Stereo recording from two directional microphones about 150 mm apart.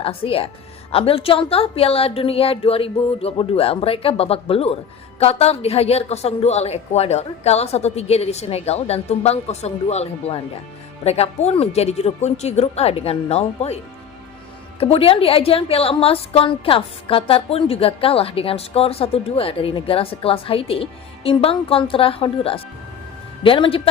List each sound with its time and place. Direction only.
0.0 s a woman's voice: 40° left (ahead or behind)
14.8 s a woman's voice: 40° left (ahead or behind)